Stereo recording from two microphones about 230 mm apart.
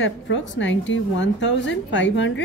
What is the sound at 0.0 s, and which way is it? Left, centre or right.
A woman's voice, left.